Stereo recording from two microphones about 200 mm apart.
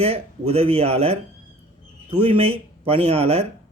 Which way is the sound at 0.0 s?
30° right (ahead or behind).